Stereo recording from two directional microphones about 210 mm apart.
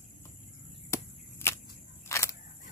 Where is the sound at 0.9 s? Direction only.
15° left (ahead or behind).